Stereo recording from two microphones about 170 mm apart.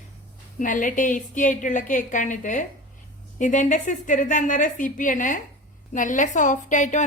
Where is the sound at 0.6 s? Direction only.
50° left (ahead or behind).